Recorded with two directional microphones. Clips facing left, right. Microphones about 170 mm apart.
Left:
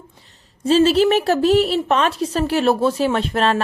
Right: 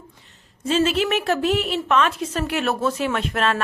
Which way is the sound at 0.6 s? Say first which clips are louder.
Left 6 dB; 35° left (ahead or behind).